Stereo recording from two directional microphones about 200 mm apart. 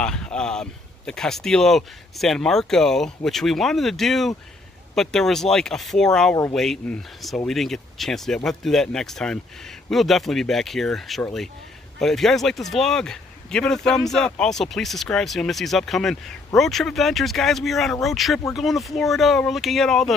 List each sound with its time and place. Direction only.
0.0 s speech: 5° left (ahead or behind)